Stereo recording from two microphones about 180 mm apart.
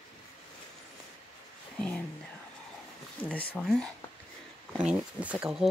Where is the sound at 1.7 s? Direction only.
5° left (ahead or behind).